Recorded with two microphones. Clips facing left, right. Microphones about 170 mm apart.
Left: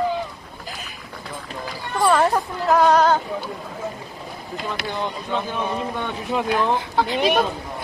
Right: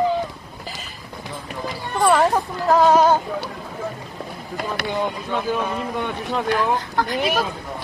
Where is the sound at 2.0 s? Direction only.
5° right (ahead or behind).